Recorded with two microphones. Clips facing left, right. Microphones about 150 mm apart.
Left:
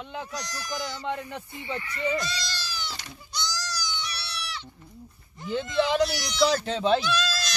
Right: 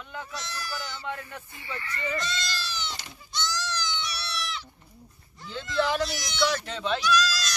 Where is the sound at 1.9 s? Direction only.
5° left (ahead or behind).